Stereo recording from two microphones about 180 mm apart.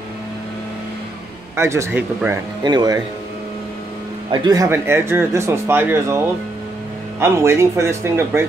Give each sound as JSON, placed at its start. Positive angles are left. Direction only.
{"t": 1.6, "sound": "speech", "side_deg": -15}
{"t": 4.3, "sound": "speech", "side_deg": -20}